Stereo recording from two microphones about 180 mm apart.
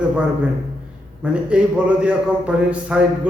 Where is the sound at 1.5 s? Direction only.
5° right (ahead or behind).